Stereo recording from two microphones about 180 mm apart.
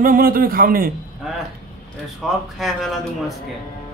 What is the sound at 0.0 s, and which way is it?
Speech, 50° right (ahead or behind).